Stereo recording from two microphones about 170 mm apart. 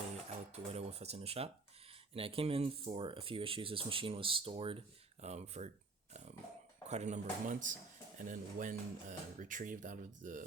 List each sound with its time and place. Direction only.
0.5 s a sound: 35° right (ahead or behind)
2.1 s speech: 35° right (ahead or behind)
6.8 s speech: 40° right (ahead or behind)